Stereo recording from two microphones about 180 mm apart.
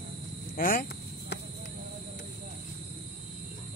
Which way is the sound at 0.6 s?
50° left (ahead or behind).